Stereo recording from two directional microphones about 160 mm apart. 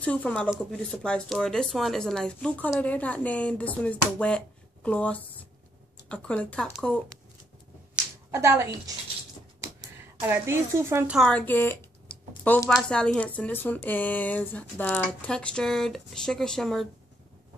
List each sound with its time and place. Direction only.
0.0 s speech: 10° left (ahead or behind)
8.3 s a woman's voice: 15° right (ahead or behind)
11.1 s speech: 5° left (ahead or behind)